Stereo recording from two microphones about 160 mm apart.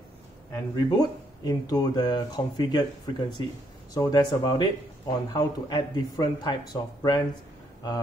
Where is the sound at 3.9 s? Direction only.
25° left (ahead or behind).